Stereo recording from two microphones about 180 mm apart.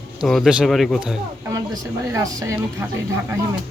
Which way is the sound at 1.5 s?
20° right (ahead or behind).